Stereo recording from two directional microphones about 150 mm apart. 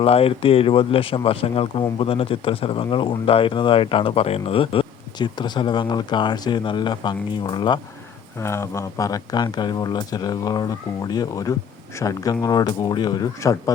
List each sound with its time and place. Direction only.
0.0 s speech: 40° left (ahead or behind)
8.4 s speech: 15° left (ahead or behind)